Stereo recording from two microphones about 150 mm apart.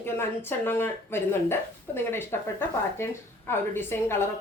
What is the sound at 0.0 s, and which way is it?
A woman's voice, 15° left (ahead or behind).